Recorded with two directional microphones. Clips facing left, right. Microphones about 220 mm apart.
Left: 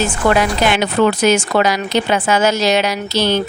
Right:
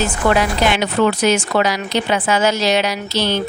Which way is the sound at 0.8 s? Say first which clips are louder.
Left 2 dB; 45° left (ahead or behind).